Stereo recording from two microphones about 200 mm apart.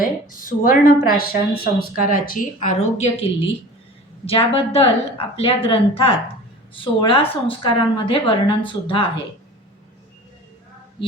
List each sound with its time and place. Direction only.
0.0 s a woman's voice: 45° left (ahead or behind)
4.3 s a woman's voice: 30° left (ahead or behind)